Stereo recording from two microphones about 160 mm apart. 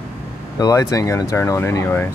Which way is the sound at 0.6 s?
20° left (ahead or behind).